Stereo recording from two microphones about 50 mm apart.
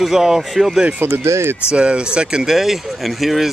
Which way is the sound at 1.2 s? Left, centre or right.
Right.